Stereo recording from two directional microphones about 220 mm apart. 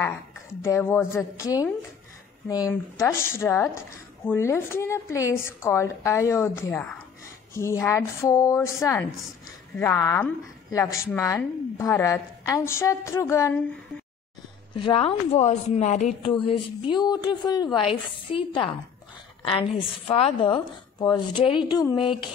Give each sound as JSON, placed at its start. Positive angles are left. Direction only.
{"t": 0.6, "sound": "a woman's voice", "side_deg": 10}
{"t": 14.8, "sound": "speech", "side_deg": 25}